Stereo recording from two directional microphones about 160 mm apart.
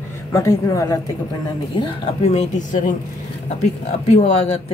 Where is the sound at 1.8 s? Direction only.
40° left (ahead or behind).